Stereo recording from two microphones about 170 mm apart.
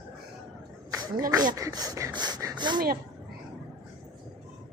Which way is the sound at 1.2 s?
20° right (ahead or behind).